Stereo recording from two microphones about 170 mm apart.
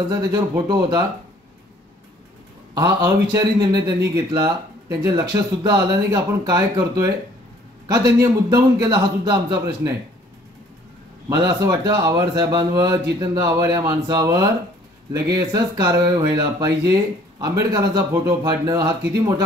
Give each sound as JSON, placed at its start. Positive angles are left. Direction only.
{"t": 0.1, "sound": "speech", "side_deg": -25}
{"t": 2.7, "sound": "speech", "side_deg": -20}
{"t": 11.2, "sound": "speech", "side_deg": -20}